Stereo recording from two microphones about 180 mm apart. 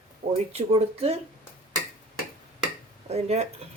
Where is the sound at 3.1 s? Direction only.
40° right (ahead or behind).